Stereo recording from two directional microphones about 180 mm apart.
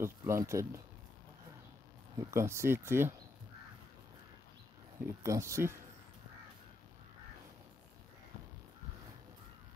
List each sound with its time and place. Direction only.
0.0 s speech: 15° right (ahead or behind)
2.1 s speech: 15° right (ahead or behind)
5.2 s speech: 15° right (ahead or behind)